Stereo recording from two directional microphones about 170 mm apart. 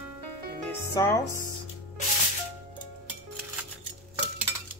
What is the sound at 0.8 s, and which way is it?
Music, 15° left (ahead or behind).